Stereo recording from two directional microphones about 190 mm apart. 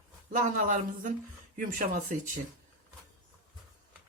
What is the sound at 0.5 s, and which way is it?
Speech, 40° right (ahead or behind).